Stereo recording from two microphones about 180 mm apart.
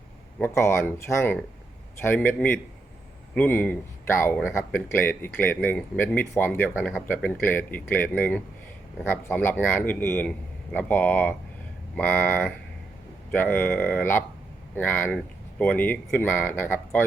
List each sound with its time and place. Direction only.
0.3 s speech: 10° left (ahead or behind)